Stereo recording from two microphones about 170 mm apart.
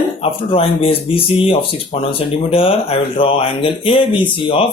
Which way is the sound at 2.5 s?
35° left (ahead or behind).